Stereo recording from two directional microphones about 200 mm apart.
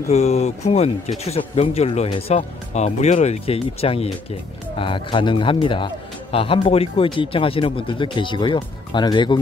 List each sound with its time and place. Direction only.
0.1 s speech: 30° left (ahead or behind)